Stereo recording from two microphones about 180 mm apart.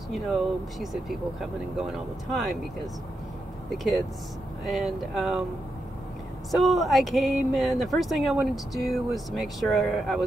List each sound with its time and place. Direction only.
1.4 s speech: centre (ahead or behind)
3.7 s speech: centre (ahead or behind)
6.5 s speech: centre (ahead or behind)